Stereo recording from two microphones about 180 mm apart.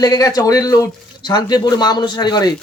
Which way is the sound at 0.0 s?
20° left (ahead or behind).